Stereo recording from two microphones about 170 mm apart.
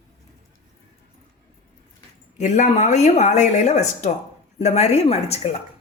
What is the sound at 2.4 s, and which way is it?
Speech, 45° left (ahead or behind).